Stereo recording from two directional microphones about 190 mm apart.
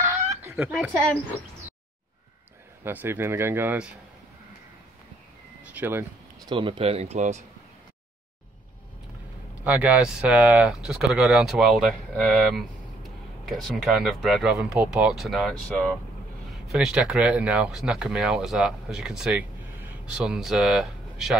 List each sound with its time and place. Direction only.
0.5 s a sound: 10° right (ahead or behind)
0.7 s speech: centre (ahead or behind)
2.8 s speech: 10° right (ahead or behind)
5.6 s a sound: 10° right (ahead or behind)
6.5 s speech: 30° right (ahead or behind)
9.7 s speech: 10° right (ahead or behind)